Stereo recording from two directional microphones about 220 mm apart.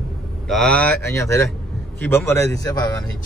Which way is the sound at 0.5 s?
5° left (ahead or behind).